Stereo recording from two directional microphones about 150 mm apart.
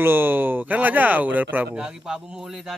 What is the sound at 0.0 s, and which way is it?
Speech, 15° right (ahead or behind).